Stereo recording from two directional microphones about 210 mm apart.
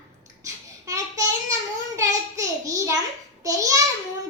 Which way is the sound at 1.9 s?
15° right (ahead or behind).